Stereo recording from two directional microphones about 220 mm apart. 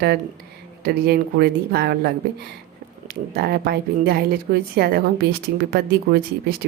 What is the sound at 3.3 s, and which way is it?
A woman's voice, 45° right (ahead or behind).